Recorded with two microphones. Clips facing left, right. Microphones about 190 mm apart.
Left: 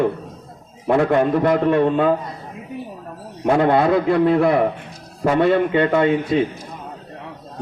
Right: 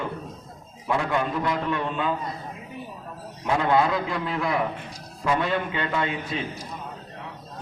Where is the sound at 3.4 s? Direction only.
55° left (ahead or behind).